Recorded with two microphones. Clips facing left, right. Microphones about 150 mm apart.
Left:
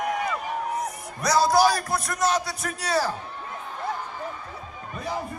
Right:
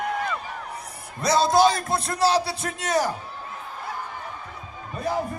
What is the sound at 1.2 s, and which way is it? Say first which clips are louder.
A man's voice: right 1 dB; 25° right (ahead or behind).